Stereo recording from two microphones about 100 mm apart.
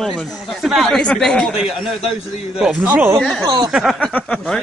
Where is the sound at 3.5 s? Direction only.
40° right (ahead or behind).